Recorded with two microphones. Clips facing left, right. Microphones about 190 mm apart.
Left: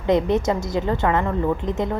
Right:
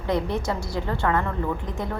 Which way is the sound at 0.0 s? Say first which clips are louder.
Left 6 dB; 20° left (ahead or behind).